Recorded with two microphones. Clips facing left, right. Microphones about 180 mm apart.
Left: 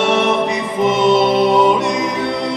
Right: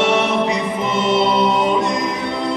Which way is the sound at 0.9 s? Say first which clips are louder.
Left 3 dB; 65° left (ahead or behind).